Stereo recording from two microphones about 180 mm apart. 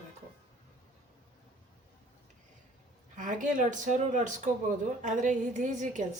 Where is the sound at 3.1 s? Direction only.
45° right (ahead or behind).